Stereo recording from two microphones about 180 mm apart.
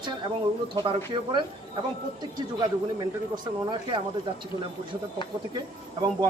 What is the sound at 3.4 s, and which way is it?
Speech, 25° right (ahead or behind).